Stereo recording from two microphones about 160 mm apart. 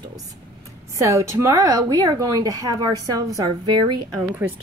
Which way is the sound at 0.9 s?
20° right (ahead or behind).